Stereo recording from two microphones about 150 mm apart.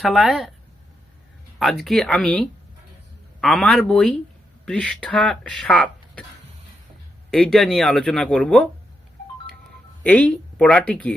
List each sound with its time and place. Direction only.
0.0 s speech: centre (ahead or behind)
1.5 s speech: centre (ahead or behind)
7.3 s speech: centre (ahead or behind)
10.0 s speech: 10° left (ahead or behind)